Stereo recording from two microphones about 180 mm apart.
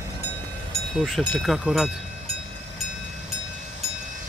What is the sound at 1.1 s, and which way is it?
Speech, centre (ahead or behind).